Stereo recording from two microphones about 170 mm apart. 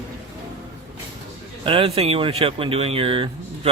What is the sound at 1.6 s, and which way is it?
Speech, 30° right (ahead or behind).